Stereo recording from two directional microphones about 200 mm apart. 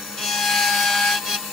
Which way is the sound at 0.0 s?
Centre (ahead or behind).